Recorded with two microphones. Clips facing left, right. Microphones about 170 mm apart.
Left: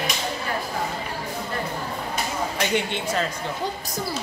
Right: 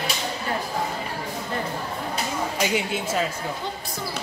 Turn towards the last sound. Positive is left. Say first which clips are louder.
# even
turn(degrees=-5)  # may be behind; listen again after turning